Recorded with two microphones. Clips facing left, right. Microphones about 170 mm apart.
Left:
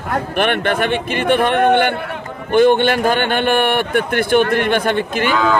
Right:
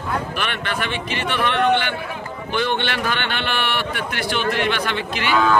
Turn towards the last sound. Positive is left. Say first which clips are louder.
# left 6 dB
turn(degrees=50)  # may be behind; listen again after turning